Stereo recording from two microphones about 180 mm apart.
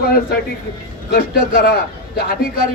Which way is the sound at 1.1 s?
60° left (ahead or behind).